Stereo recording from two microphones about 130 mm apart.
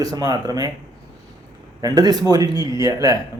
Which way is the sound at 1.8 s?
30° right (ahead or behind).